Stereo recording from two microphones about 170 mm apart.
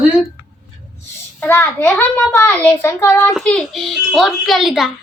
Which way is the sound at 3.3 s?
5° left (ahead or behind).